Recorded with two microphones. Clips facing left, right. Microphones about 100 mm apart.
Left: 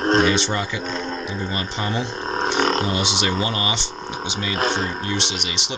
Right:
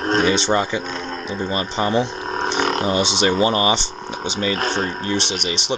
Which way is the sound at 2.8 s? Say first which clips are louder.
Right 4 dB; 30° right (ahead or behind).